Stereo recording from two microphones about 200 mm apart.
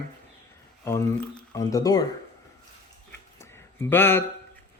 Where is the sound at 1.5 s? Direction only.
15° left (ahead or behind).